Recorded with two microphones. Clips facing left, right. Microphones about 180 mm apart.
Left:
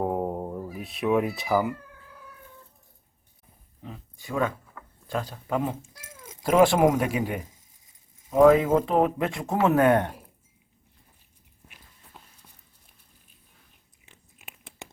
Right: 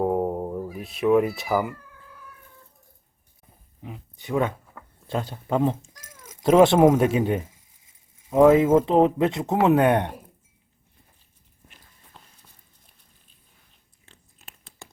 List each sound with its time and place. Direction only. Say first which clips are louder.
0.0 s cat: right 4 dB; centre (ahead or behind)
3.8 s speech: right 4 dB; 20° right (ahead or behind)
12.1 s walk: even; 10° left (ahead or behind)
14.3 s a sound: left 3 dB; 15° left (ahead or behind)